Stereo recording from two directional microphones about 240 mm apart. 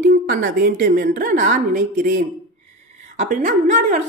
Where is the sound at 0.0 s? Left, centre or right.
Right.